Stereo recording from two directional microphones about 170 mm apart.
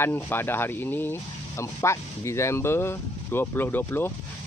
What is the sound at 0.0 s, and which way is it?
Speech, 15° left (ahead or behind).